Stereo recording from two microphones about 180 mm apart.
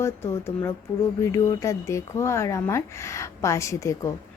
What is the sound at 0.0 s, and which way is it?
Speech, 15° left (ahead or behind).